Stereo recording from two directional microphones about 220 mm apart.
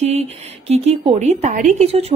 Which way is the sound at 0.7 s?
25° right (ahead or behind).